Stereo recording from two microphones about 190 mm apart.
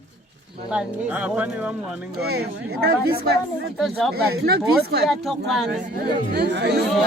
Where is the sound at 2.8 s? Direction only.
55° right (ahead or behind).